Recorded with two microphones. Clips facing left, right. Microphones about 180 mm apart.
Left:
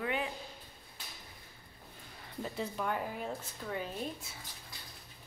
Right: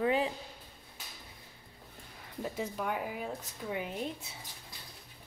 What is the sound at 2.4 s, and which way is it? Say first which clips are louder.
Speech: right 1 dB; 5° right (ahead or behind).